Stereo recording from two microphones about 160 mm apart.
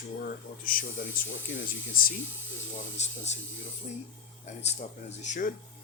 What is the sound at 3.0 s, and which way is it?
Speech, 45° left (ahead or behind).